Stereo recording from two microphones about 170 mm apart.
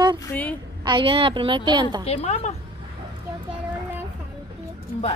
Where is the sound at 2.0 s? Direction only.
35° left (ahead or behind).